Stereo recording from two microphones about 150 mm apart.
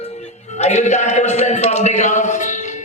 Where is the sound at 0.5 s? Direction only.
50° left (ahead or behind).